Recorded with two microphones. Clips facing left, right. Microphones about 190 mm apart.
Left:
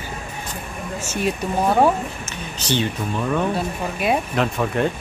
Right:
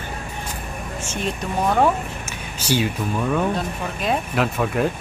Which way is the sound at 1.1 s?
5° left (ahead or behind).